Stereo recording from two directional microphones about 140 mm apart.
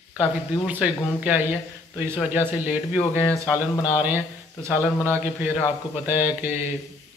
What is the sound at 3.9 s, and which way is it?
A man's voice, 15° right (ahead or behind).